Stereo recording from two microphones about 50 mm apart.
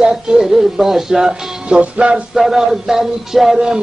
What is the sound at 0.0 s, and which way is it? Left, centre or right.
Speech, centre.